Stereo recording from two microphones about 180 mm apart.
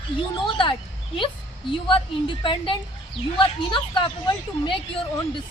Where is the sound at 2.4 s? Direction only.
30° left (ahead or behind).